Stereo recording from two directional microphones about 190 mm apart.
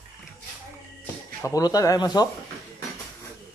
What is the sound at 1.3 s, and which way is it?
Speech, 15° left (ahead or behind).